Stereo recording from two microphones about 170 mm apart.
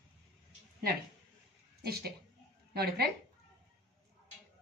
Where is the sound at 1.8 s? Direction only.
65° right (ahead or behind).